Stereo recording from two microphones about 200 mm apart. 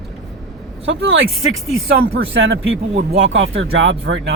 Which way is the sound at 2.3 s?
75° right (ahead or behind).